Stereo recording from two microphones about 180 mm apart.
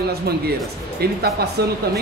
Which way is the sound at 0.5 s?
60° right (ahead or behind).